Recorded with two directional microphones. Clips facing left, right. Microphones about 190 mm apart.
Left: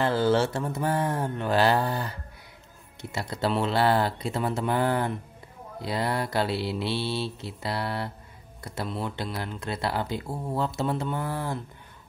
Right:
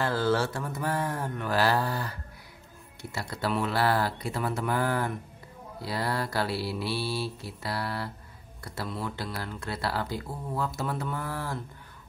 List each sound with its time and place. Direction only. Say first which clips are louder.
0.0 s speech: left 4 dB; 20° left (ahead or behind)